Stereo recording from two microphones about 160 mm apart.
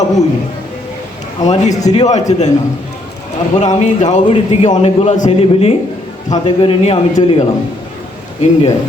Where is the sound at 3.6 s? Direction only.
45° left (ahead or behind).